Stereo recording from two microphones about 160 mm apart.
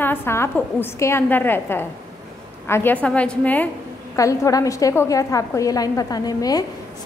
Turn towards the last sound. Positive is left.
turn(degrees=25)  # may be behind; listen again after turning